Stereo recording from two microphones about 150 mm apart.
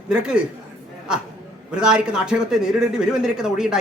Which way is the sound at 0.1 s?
5° right (ahead or behind).